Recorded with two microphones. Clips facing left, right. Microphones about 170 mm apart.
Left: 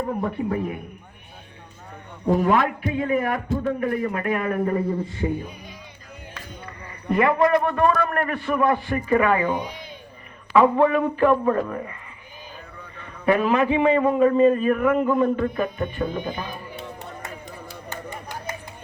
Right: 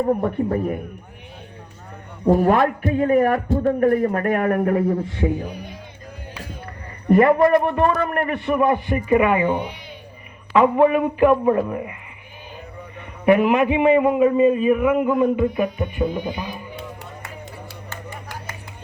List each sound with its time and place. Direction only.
0.4 s a man's voice: 45° right (ahead or behind)
2.3 s a man's voice: 40° right (ahead or behind); by 5.5 s 80° right
7.1 s a man's voice: 40° right (ahead or behind)
7.5 s a man's voice: 20° right (ahead or behind)
10.6 s a man's voice: 15° right (ahead or behind)
13.0 s a man's voice: 20° right (ahead or behind)
17.8 s a sound: 20° left (ahead or behind)